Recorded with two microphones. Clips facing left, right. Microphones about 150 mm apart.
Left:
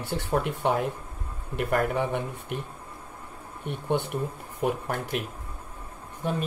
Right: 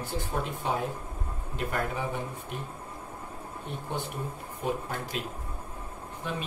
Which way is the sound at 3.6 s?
65° left (ahead or behind).